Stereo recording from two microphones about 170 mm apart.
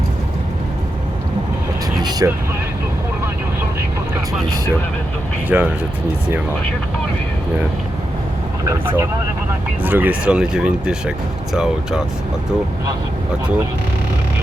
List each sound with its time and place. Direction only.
2.0 s vehicle: 25° right (ahead or behind)
5.5 s speech: 10° right (ahead or behind)
8.6 s speech: 20° right (ahead or behind); by 12.0 s 5° right (ahead or behind)